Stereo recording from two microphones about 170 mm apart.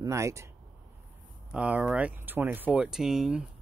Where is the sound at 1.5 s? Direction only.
5° right (ahead or behind).